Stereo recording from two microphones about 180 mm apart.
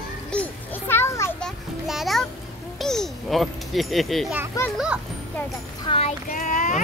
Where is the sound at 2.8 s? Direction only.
Centre (ahead or behind).